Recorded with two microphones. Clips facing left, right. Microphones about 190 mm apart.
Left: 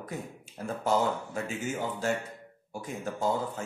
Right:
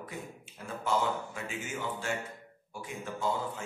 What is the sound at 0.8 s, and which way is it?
Speech, 40° left (ahead or behind).